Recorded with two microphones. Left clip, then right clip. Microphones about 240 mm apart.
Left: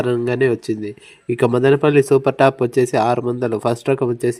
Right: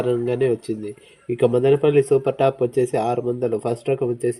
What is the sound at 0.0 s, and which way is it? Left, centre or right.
Speech, left.